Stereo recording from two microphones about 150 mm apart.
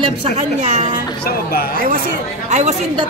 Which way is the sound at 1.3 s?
85° left.